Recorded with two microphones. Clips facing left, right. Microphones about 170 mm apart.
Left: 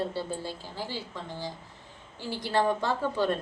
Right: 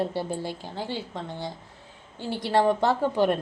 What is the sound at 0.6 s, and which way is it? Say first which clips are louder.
A woman's voice: right 4 dB; 60° right (ahead or behind).